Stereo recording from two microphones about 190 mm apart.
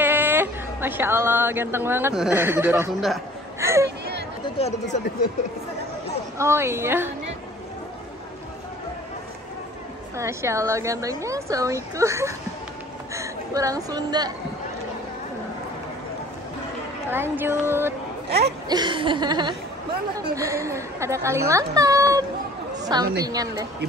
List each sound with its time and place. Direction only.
0.0 s speech: 10° right (ahead or behind)
2.9 s a man's voice: centre (ahead or behind)
3.5 s a sound: 15° right (ahead or behind)
6.3 s speech: 15° right (ahead or behind)
10.1 s a woman's voice: 15° right (ahead or behind)
17.1 s speech: 10° right (ahead or behind)
18.7 s speech: 25° right (ahead or behind)